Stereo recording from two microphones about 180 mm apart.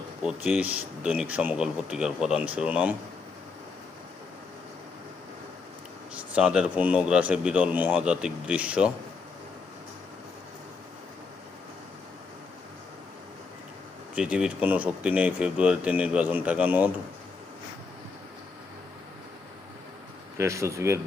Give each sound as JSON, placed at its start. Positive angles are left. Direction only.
{"t": 0.2, "sound": "speech", "side_deg": -5}
{"t": 6.1, "sound": "speech", "side_deg": -5}
{"t": 14.2, "sound": "speech", "side_deg": -5}
{"t": 20.4, "sound": "speech", "side_deg": -15}